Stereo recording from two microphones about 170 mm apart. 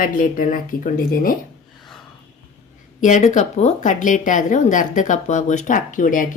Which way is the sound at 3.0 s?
45° left (ahead or behind).